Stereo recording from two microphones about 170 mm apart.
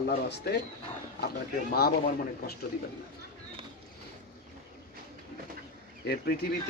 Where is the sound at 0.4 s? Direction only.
70° left (ahead or behind).